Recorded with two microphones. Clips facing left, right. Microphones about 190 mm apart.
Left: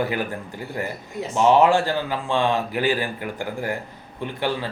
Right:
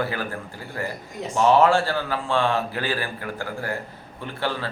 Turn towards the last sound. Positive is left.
turn(degrees=15)  # may be behind; listen again after turning